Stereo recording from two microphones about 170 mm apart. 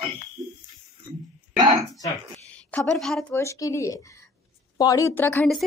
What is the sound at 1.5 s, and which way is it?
Speech, 25° right (ahead or behind).